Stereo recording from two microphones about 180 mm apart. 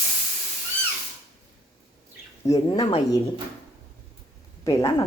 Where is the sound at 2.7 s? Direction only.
35° left (ahead or behind).